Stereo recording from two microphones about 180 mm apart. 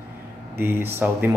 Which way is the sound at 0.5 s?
10° right (ahead or behind).